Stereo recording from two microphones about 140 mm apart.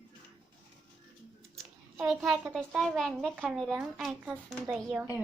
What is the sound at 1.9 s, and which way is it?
A child's voice, 5° right (ahead or behind).